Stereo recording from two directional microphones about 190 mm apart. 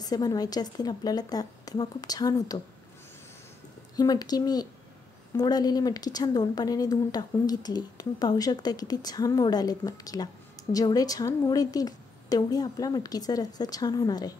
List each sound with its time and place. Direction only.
0.0 s speech: 20° left (ahead or behind)
3.9 s speech: 20° left (ahead or behind)